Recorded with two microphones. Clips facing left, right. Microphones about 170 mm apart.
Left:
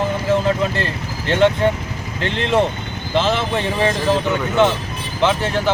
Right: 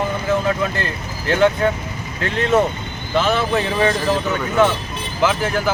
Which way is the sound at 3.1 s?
30° left (ahead or behind).